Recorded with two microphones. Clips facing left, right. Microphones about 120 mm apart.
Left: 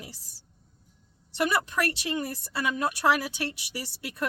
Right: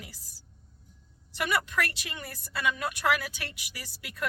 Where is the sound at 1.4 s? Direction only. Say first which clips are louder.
Left 3 dB; 35° left (ahead or behind).